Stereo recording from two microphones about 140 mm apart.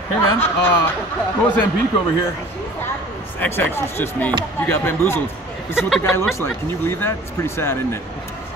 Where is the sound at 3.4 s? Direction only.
15° left (ahead or behind).